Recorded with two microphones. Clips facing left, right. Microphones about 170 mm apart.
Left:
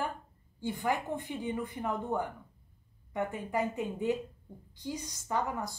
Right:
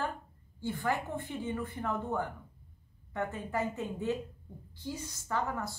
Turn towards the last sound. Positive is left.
turn(degrees=15)  # may be behind; listen again after turning